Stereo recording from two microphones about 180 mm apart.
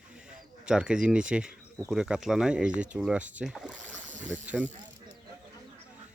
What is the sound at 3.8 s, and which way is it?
Speech, 45° right (ahead or behind).